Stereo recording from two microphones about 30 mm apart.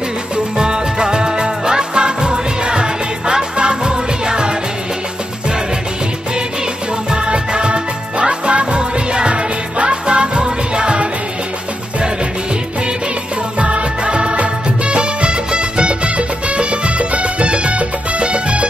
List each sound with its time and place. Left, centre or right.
0.6 s music: right
7.1 s music: right
13.6 s music: right